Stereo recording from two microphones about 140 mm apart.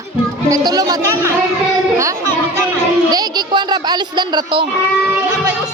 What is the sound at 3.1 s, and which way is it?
Speech, 30° right (ahead or behind).